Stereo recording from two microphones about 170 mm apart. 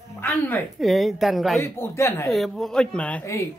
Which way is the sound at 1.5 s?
15° left (ahead or behind).